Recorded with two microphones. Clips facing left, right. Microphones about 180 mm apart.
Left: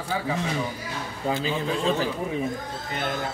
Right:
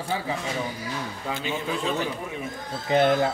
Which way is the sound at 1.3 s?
30° left (ahead or behind).